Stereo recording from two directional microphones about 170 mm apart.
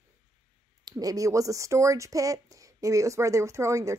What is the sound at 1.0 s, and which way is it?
Speech, 20° right (ahead or behind).